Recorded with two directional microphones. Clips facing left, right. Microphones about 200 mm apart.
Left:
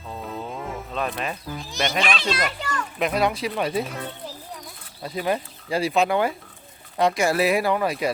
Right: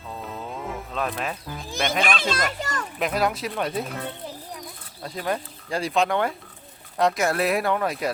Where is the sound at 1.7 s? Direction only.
50° right (ahead or behind).